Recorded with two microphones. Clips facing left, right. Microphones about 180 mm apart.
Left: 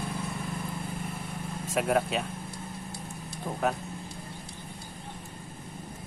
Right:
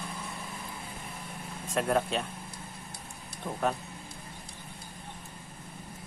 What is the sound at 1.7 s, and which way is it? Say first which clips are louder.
Speech: left 1 dB; 5° left (ahead or behind).